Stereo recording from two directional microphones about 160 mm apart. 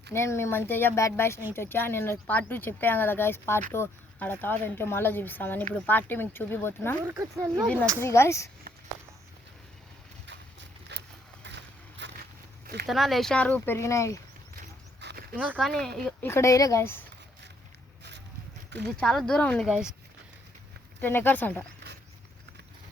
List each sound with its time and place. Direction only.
0.1 s speech: 15° left (ahead or behind)
7.1 s speech: 20° right (ahead or behind)
8.0 s speech: 15° left (ahead or behind)
10.9 s a sound: 90° right
11.4 s vehicle: 90° right
12.9 s speech: centre (ahead or behind); by 14.2 s 20° left (ahead or behind)
15.0 s a sound: 65° right (ahead or behind)
15.5 s speech: 5° left (ahead or behind)
16.2 s speech: 15° left (ahead or behind)
18.9 s speech: 5° left (ahead or behind)
19.6 s speech: 5° right (ahead or behind)
21.0 s speech: 15° left (ahead or behind)